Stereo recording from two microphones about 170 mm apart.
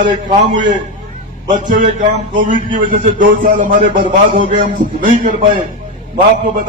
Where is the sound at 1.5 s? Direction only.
50° right (ahead or behind).